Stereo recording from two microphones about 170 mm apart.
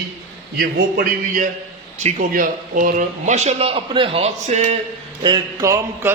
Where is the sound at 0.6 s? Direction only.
55° right (ahead or behind).